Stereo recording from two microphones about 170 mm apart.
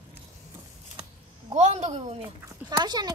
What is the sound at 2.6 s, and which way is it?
Speech, 25° right (ahead or behind).